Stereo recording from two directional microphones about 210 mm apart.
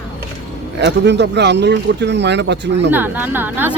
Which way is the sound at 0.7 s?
55° right (ahead or behind).